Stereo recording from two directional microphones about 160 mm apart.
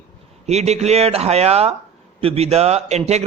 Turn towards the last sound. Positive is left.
turn(degrees=-45)  # may be behind; listen again after turning